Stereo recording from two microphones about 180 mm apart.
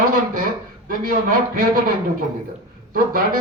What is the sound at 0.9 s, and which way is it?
Speech, 50° right (ahead or behind).